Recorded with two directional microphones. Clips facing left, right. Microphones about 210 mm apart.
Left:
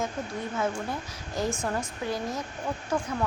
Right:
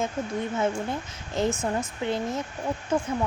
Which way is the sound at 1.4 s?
20° right (ahead or behind).